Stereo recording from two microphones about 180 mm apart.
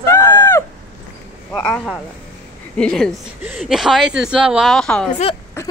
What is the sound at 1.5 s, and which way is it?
Speech, 5° left (ahead or behind).